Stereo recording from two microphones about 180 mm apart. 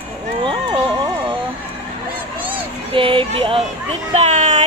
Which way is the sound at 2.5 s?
30° right (ahead or behind).